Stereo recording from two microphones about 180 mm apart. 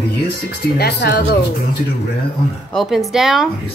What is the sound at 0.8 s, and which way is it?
Speech, 65° left (ahead or behind).